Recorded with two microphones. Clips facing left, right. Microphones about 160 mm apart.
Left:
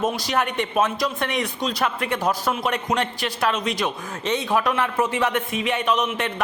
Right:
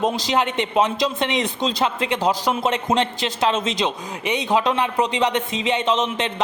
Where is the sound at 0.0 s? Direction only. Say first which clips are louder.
Right 2 dB; 20° right (ahead or behind).